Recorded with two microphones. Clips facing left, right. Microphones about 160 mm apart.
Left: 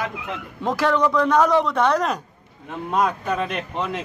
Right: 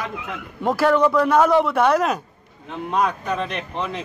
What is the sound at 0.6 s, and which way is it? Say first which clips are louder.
A man's voice: right 3 dB; 5° right (ahead or behind).